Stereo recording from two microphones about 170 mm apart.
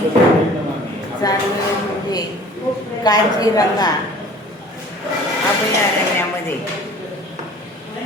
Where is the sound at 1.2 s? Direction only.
20° left (ahead or behind).